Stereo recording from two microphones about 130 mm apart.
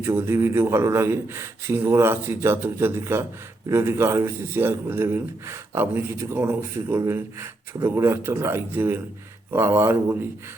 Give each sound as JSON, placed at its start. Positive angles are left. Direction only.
{"t": 0.0, "sound": "a man's voice", "side_deg": -20}